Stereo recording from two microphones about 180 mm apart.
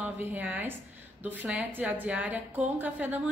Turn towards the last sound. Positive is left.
turn(degrees=-10)  # may be behind; listen again after turning